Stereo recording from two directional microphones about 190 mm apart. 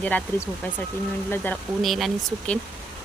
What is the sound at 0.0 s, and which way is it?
Speech, 10° left (ahead or behind).